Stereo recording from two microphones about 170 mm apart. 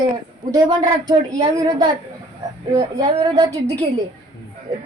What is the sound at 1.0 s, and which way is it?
Speech, 25° right (ahead or behind).